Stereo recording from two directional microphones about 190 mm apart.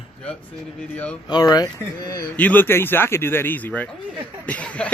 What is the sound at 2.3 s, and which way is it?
A man's voice, 10° left (ahead or behind).